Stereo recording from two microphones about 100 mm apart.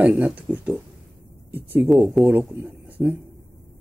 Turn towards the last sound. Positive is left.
turn(degrees=-15)  # may be behind; listen again after turning